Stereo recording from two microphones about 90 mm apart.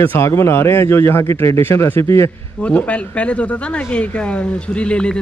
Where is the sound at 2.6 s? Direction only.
15° left (ahead or behind).